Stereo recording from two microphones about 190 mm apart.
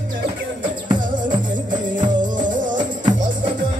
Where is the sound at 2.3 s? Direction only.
45° right (ahead or behind).